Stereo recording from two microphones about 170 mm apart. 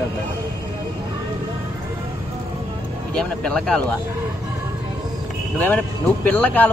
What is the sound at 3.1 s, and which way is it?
Speech, 5° left (ahead or behind).